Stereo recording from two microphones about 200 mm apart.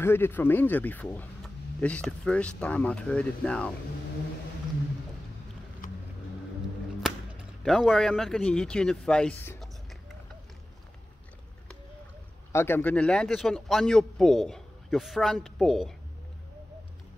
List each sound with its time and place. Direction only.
0.0 s speech: 10° left (ahead or behind)
7.6 s speech: centre (ahead or behind)
12.5 s speech: 10° left (ahead or behind)